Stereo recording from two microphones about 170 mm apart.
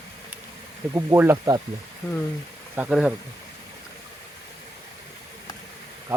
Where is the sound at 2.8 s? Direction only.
5° right (ahead or behind).